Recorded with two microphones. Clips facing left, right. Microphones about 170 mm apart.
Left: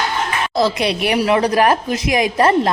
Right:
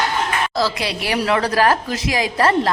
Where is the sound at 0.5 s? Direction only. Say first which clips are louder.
Left 4 dB; 20° left (ahead or behind).